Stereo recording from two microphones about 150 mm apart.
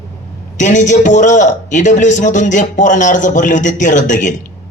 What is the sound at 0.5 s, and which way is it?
A man's voice, 55° left (ahead or behind).